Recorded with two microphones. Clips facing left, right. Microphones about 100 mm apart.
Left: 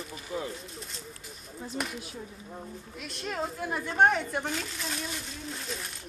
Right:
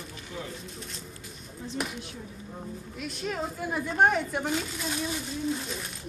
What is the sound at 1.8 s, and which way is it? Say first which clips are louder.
A woman's voice: right 1 dB; centre (ahead or behind).